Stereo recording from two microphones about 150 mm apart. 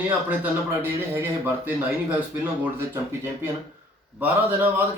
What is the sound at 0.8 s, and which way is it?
A man's voice, 15° right (ahead or behind).